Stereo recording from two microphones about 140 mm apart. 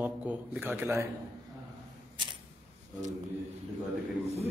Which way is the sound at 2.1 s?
35° right (ahead or behind).